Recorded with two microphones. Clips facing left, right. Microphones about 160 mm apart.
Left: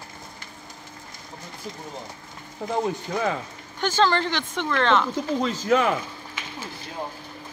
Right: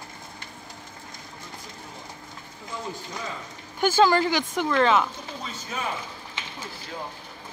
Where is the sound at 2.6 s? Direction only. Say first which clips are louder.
Left 10 dB; 65° left (ahead or behind).